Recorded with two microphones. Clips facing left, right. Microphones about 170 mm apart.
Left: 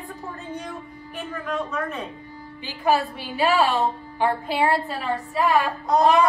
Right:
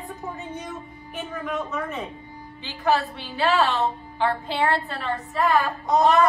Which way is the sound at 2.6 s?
15° left (ahead or behind).